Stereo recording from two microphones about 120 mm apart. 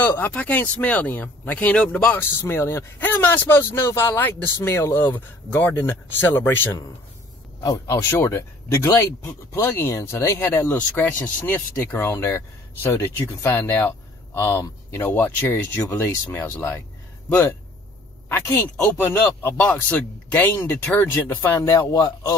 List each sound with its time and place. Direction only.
0.0 s speech: 15° left (ahead or behind)
7.6 s speech: 30° left (ahead or behind)
19.4 s speech: 15° left (ahead or behind)
21.5 s speech: 25° left (ahead or behind)